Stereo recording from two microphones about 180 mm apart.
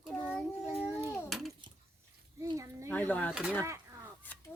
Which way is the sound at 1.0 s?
Centre (ahead or behind).